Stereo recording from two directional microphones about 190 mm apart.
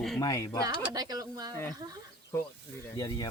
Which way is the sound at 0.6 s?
20° right (ahead or behind).